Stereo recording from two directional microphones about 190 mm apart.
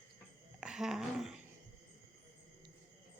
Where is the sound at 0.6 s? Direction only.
5° right (ahead or behind).